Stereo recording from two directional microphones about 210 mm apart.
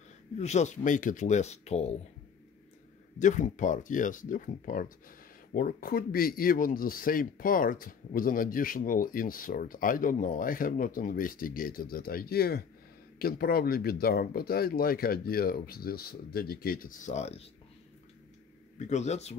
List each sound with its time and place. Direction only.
0.4 s speech: 35° left (ahead or behind)
3.2 s speech: 35° left (ahead or behind)
18.8 s speech: 35° left (ahead or behind)